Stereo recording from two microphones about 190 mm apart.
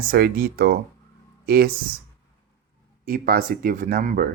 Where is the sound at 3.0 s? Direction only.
50° right (ahead or behind).